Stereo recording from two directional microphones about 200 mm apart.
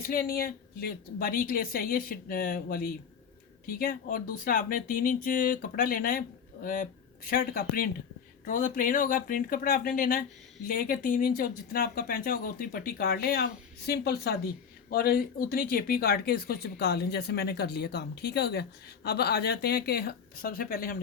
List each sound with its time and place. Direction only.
0.0 s speech: 45° left (ahead or behind)